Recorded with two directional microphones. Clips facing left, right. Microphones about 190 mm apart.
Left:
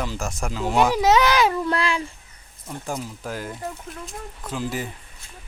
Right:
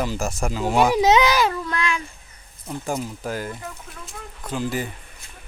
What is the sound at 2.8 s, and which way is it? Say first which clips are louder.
Speech: right 3 dB; centre (ahead or behind).